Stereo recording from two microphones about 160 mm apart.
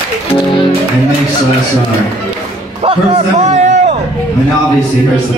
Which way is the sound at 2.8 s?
40° right (ahead or behind).